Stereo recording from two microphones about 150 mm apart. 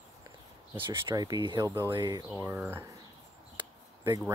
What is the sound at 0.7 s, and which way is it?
Speech, 30° right (ahead or behind).